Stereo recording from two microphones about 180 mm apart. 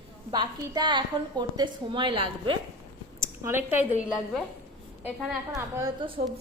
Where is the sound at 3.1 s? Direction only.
15° right (ahead or behind).